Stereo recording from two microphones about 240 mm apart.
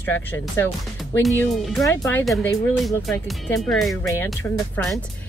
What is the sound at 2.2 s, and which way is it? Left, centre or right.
Speech, centre.